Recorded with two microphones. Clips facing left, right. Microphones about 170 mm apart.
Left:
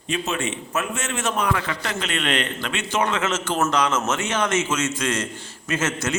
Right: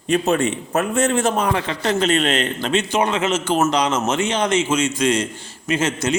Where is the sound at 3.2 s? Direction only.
15° right (ahead or behind).